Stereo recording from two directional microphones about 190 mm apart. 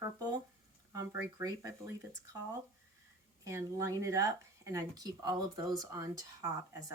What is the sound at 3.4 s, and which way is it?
Speech, 15° right (ahead or behind).